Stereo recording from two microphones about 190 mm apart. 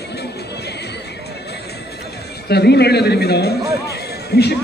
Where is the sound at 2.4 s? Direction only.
60° left (ahead or behind).